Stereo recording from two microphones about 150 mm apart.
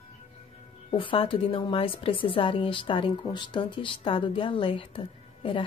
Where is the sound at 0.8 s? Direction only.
35° left (ahead or behind).